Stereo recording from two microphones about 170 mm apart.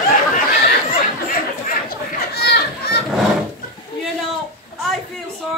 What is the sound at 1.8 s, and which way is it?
Chatter, 70° left (ahead or behind).